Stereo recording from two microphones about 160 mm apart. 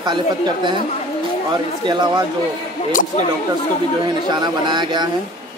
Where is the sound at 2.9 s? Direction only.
60° left (ahead or behind).